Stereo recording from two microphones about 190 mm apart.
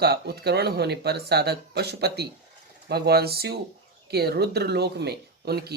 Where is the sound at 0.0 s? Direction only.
55° right (ahead or behind).